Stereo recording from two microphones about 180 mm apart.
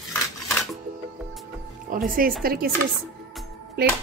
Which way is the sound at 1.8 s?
50° right (ahead or behind).